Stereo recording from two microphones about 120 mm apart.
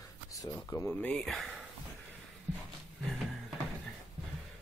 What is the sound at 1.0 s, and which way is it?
Speech, 5° left (ahead or behind).